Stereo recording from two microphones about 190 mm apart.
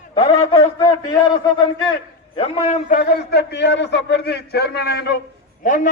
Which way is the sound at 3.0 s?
55° left (ahead or behind).